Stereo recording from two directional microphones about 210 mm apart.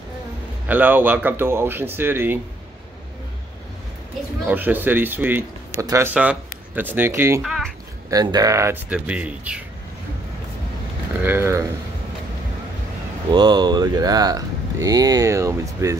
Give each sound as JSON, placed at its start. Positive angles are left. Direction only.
{"t": 0.7, "sound": "speech", "side_deg": -10}
{"t": 4.5, "sound": "speech", "side_deg": -10}
{"t": 7.4, "sound": "speech", "side_deg": 0}
{"t": 8.1, "sound": "speech", "side_deg": -20}
{"t": 11.2, "sound": "speech", "side_deg": -10}
{"t": 13.3, "sound": "speech", "side_deg": -20}